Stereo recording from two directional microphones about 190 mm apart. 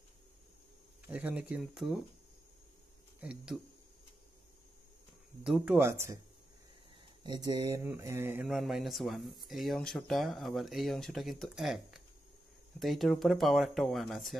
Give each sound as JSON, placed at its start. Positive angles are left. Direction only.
{"t": 1.0, "sound": "speech", "side_deg": -10}
{"t": 3.2, "sound": "speech", "side_deg": -5}
{"t": 5.4, "sound": "speech", "side_deg": -5}
{"t": 7.2, "sound": "speech", "side_deg": -20}
{"t": 8.5, "sound": "speech", "side_deg": 0}